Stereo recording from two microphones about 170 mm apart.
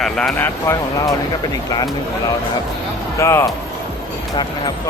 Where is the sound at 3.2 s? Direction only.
15° left (ahead or behind).